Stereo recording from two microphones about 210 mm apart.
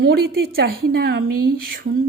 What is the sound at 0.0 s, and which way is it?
Speech, 45° right (ahead or behind).